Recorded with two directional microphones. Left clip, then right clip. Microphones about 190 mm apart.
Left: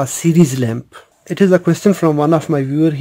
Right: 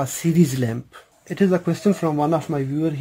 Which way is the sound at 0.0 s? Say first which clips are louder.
Left 7 dB; 30° left (ahead or behind).